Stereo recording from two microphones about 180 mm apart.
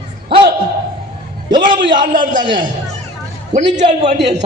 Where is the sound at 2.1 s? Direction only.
45° right (ahead or behind).